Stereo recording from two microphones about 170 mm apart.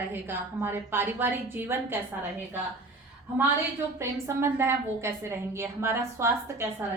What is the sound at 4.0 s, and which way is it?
A woman's voice, 15° right (ahead or behind).